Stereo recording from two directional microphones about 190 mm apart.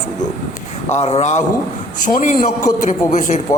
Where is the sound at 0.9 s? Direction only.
35° left (ahead or behind).